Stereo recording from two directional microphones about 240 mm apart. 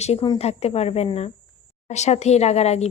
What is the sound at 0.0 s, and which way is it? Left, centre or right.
Speech, left.